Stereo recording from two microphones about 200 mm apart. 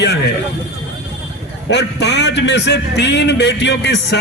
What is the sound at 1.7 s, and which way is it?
A man's voice, 60° left (ahead or behind).